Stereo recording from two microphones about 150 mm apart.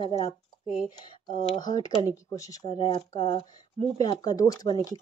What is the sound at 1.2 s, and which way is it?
Speech, 30° left (ahead or behind).